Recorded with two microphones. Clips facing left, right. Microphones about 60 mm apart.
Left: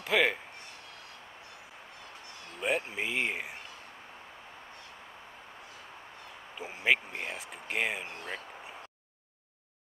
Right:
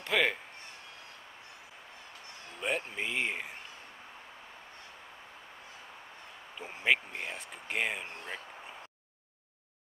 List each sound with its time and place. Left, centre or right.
0.0 s a man's voice: centre
2.6 s speech: centre
6.6 s speech: centre